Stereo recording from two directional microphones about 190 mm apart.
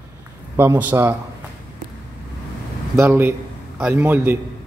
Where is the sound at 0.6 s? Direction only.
10° right (ahead or behind).